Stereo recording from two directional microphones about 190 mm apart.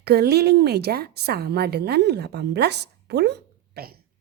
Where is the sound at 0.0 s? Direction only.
60° right (ahead or behind).